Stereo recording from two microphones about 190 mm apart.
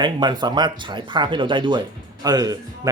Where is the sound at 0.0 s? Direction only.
25° right (ahead or behind).